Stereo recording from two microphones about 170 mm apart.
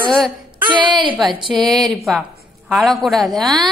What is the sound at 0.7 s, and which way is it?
Speech, 30° right (ahead or behind).